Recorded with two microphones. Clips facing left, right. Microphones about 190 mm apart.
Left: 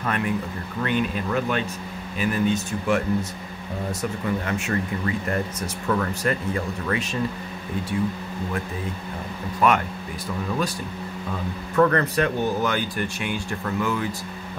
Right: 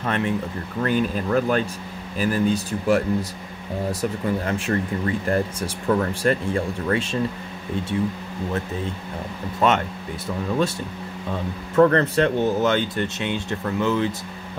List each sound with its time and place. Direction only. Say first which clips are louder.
0.0 s speech: right 2 dB; 30° right (ahead or behind)
9.6 s speech: right 1 dB; 25° right (ahead or behind)
11.7 s speech: right 3 dB; 30° right (ahead or behind)